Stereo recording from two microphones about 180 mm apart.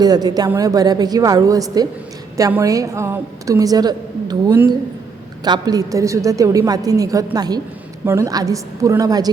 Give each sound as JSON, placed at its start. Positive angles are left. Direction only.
{"t": 0.0, "sound": "a woman's voice", "side_deg": -20}